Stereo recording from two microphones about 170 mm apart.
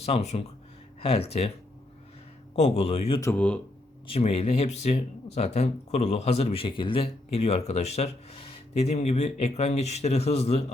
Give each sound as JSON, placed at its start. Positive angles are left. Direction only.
{"t": 0.0, "sound": "speech", "side_deg": 40}
{"t": 2.6, "sound": "speech", "side_deg": 35}
{"t": 3.2, "sound": "speech", "side_deg": 10}
{"t": 4.0, "sound": "speech", "side_deg": 35}